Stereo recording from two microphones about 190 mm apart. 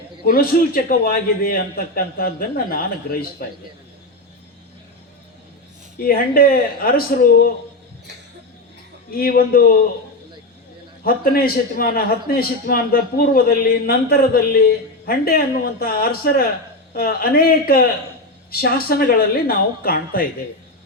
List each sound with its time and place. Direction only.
0.3 s a man's voice: 50° left (ahead or behind)
6.0 s a man's voice: 50° left (ahead or behind)
9.0 s a man's voice: 50° left (ahead or behind)
11.0 s a man's voice: 50° left (ahead or behind)